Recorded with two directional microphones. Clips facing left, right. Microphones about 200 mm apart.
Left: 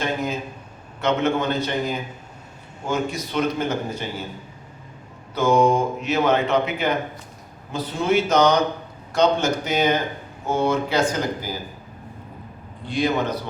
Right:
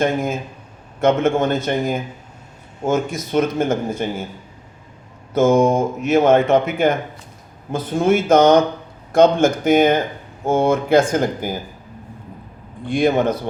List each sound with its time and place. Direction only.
0.0 s speech: 50° right (ahead or behind)
5.3 s speech: 45° right (ahead or behind)
12.8 s speech: 50° right (ahead or behind)